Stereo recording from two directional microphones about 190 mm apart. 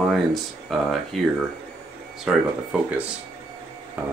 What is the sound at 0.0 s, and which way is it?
Speech, centre (ahead or behind).